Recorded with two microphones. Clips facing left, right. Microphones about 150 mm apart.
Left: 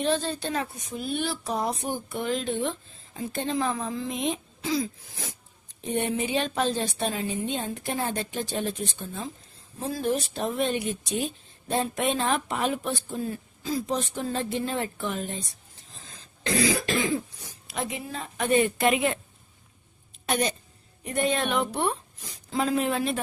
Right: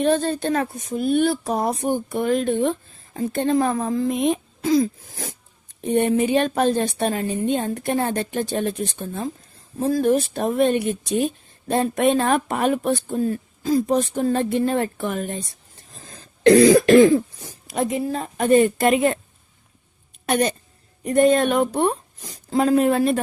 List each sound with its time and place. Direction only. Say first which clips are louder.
0.0 s a woman's voice: right 7 dB; 50° right (ahead or behind)
16.5 s speech: right 14 dB; 55° right (ahead or behind)
20.2 s speech: right 6 dB; 55° right (ahead or behind)
21.0 s speech: right 10 dB; 45° right (ahead or behind)